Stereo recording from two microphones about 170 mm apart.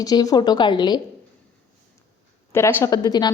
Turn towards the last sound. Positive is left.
turn(degrees=25)  # may be behind; listen again after turning